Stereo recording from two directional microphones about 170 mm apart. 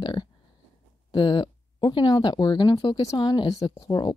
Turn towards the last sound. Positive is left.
turn(degrees=25)  # may be behind; listen again after turning